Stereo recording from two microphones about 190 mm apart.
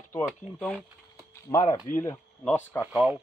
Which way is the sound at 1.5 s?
25° left (ahead or behind).